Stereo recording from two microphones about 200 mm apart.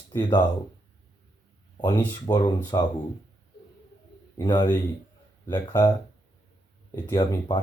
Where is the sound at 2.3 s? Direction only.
20° left (ahead or behind).